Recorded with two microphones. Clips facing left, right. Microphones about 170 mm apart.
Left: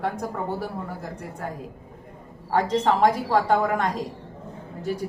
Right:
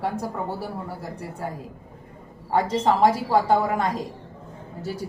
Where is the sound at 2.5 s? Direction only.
10° right (ahead or behind).